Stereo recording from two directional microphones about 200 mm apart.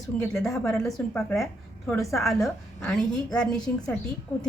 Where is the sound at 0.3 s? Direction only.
Centre (ahead or behind).